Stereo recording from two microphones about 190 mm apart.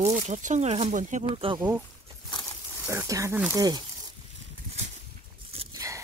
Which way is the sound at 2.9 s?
15° right (ahead or behind).